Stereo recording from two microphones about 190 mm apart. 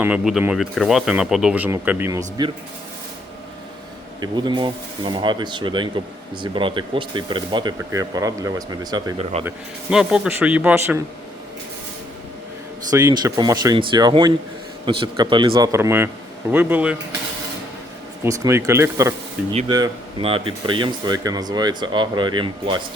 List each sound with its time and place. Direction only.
0.0 s speech: 5° right (ahead or behind)
4.2 s speech: 25° right (ahead or behind)
9.5 s speech: 5° right (ahead or behind)
12.9 s speech: 20° right (ahead or behind)
15.7 s speech: 10° right (ahead or behind)
18.2 s speech: 15° right (ahead or behind)